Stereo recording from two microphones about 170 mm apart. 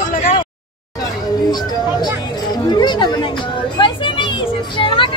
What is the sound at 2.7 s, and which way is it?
Chatter, 25° left (ahead or behind).